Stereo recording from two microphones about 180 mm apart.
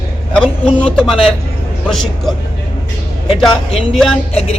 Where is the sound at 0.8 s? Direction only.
5° left (ahead or behind).